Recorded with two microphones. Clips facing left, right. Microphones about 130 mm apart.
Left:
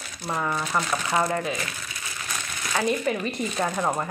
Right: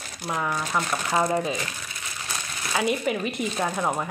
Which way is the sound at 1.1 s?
20° right (ahead or behind).